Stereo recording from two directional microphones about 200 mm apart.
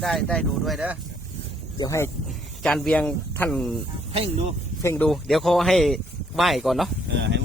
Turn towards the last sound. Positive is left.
turn(degrees=-60)  # may be behind; listen again after turning